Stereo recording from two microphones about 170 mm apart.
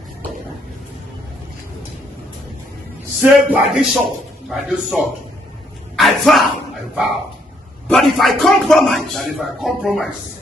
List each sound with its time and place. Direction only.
3.2 s speech: 5° right (ahead or behind)
5.9 s a sound: centre (ahead or behind)
7.9 s speech: centre (ahead or behind)